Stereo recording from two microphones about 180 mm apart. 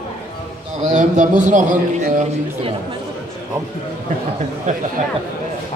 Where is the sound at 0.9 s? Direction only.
45° right (ahead or behind).